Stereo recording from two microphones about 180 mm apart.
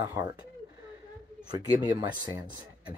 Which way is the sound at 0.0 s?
20° right (ahead or behind).